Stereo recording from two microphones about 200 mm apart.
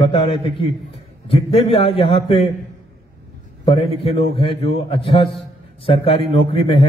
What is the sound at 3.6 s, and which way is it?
A man's voice, 30° left (ahead or behind).